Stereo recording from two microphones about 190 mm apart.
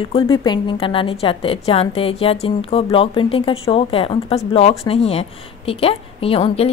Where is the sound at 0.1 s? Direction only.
25° left (ahead or behind).